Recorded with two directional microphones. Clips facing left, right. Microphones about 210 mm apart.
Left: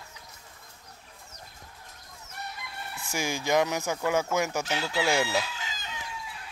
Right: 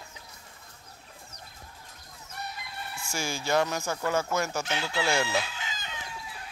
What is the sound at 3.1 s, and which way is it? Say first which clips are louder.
Speech: left 2 dB; 15° left (ahead or behind).